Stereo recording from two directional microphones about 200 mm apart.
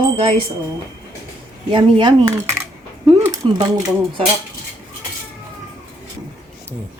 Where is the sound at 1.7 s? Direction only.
20° right (ahead or behind).